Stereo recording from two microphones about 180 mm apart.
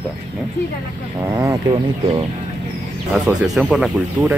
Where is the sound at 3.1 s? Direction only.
5° right (ahead or behind).